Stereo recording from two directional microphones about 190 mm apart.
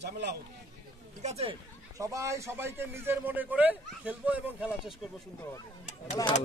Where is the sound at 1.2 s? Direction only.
35° right (ahead or behind).